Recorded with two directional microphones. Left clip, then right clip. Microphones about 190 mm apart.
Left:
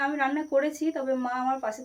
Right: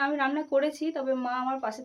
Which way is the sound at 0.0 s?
5° right (ahead or behind).